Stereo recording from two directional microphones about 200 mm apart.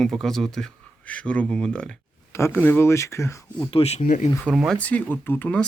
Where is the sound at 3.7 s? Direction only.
30° left (ahead or behind).